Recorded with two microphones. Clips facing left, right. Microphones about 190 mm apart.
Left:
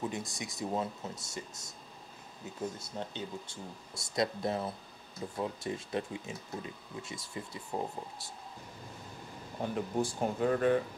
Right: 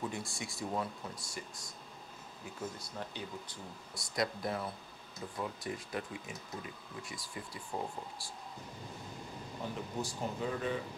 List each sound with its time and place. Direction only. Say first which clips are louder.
0.0 s speech: left 3 dB; 20° left (ahead or behind)
9.6 s speech: left 7 dB; 50° left (ahead or behind)